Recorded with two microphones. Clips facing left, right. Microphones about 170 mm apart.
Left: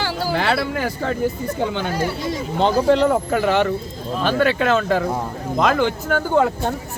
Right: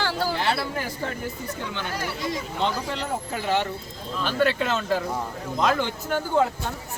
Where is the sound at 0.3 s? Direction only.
75° left (ahead or behind); by 1.1 s 90° left.